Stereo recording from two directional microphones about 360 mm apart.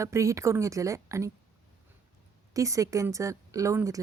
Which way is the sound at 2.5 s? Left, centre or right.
Centre.